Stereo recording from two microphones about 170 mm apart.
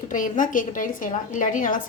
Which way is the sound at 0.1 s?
50° left (ahead or behind).